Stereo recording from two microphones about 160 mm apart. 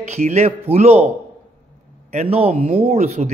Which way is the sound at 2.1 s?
40° right (ahead or behind).